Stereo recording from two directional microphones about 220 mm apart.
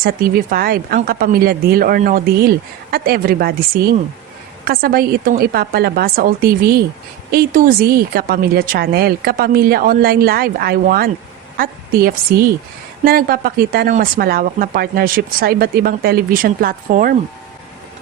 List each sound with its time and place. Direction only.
0.0 s a woman's voice: 40° right (ahead or behind)